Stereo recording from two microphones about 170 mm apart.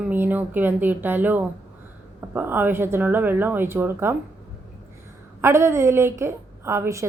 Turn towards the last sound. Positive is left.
turn(degrees=-15)  # may be behind; listen again after turning